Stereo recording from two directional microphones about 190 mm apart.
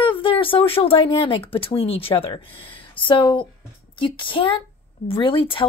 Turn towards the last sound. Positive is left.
turn(degrees=25)  # may be behind; listen again after turning